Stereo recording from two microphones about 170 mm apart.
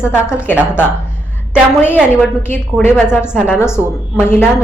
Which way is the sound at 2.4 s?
10° left (ahead or behind).